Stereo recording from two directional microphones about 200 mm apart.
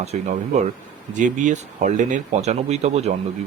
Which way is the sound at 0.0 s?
30° right (ahead or behind).